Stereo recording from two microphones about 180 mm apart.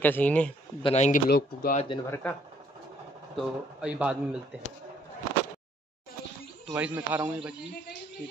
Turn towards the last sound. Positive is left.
turn(degrees=-10)  # may be behind; listen again after turning